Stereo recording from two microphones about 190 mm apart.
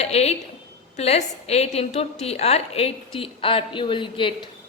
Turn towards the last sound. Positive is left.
turn(degrees=25)  # may be behind; listen again after turning